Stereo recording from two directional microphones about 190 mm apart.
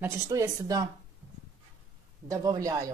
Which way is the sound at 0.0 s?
15° right (ahead or behind).